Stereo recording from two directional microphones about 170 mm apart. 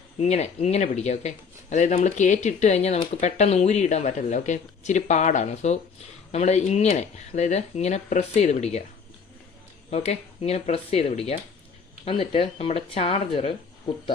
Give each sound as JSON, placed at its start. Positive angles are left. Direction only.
{"t": 0.2, "sound": "speech", "side_deg": 40}
{"t": 9.9, "sound": "speech", "side_deg": 40}